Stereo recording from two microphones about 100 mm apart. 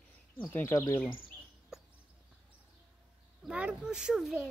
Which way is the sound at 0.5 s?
25° left (ahead or behind).